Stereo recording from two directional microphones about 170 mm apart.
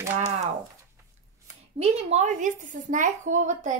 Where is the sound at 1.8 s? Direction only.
40° right (ahead or behind).